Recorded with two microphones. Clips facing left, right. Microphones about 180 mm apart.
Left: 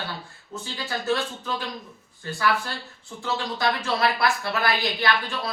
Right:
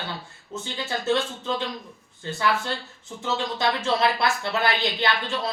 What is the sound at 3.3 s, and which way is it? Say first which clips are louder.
Speech: right 1 dB; 25° right (ahead or behind).